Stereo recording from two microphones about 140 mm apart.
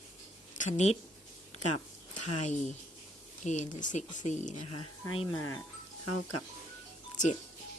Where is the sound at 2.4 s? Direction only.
55° left (ahead or behind).